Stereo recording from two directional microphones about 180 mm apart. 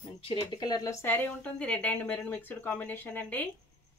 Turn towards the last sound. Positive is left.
turn(degrees=10)  # may be behind; listen again after turning